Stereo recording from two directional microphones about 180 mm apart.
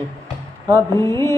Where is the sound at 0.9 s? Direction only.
15° left (ahead or behind).